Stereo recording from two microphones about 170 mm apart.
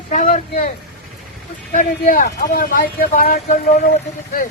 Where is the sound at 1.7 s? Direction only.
55° left (ahead or behind).